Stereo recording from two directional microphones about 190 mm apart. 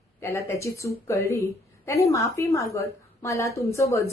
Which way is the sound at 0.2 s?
15° left (ahead or behind).